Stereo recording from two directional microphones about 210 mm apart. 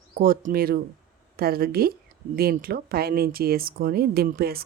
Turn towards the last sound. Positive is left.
turn(degrees=-45)  # may be behind; listen again after turning